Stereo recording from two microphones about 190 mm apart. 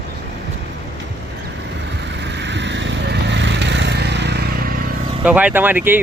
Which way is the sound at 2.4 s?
70° right (ahead or behind).